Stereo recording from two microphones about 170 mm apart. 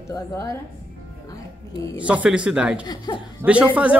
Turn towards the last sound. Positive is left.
turn(degrees=-10)  # may be behind; listen again after turning